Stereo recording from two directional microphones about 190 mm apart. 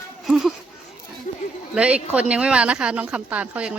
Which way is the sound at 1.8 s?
5° right (ahead or behind).